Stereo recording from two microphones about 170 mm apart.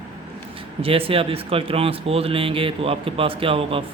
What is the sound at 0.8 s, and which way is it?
A man's voice, 35° right (ahead or behind).